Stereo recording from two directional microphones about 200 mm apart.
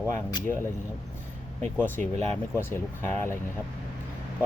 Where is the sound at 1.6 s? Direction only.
10° left (ahead or behind).